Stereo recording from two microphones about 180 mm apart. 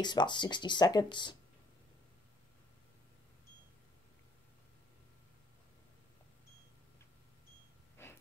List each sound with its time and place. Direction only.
0.0 s speech: 25° left (ahead or behind)
8.0 s wheeze: 15° left (ahead or behind)